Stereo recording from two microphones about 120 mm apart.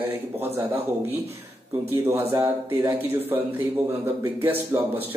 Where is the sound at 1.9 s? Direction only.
25° right (ahead or behind).